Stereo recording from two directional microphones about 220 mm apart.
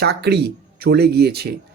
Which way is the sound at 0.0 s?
50° right (ahead or behind).